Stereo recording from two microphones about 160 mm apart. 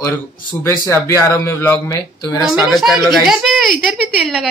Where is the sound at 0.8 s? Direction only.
20° left (ahead or behind).